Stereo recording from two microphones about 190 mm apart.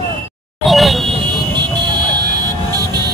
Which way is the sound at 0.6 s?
Centre (ahead or behind).